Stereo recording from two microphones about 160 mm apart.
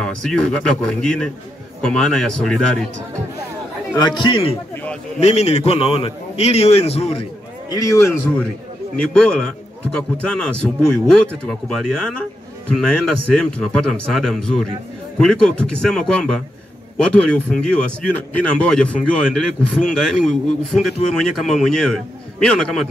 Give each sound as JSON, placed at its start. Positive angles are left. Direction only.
{"t": 0.0, "sound": "speech", "side_deg": 5}
{"t": 4.0, "sound": "a man's voice", "side_deg": 30}
{"t": 7.7, "sound": "a man's voice", "side_deg": 20}
{"t": 8.9, "sound": "a man's voice", "side_deg": 5}